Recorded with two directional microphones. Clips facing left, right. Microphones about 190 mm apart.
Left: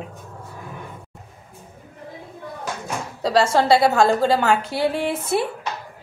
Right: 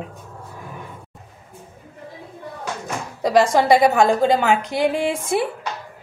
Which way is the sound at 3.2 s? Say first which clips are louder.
Right 2 dB; 15° right (ahead or behind).